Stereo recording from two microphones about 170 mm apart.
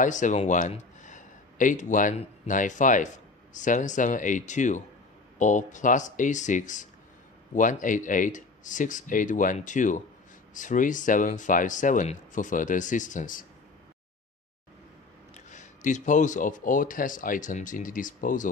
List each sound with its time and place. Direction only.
0.0 s speech: 45° left (ahead or behind)
15.5 s speech: 45° left (ahead or behind)